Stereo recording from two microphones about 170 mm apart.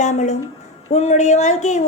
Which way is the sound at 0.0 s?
45° left (ahead or behind).